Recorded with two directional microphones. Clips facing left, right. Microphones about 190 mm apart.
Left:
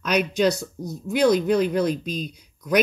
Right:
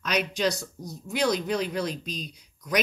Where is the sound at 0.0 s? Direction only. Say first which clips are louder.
Left 6 dB; 55° left (ahead or behind).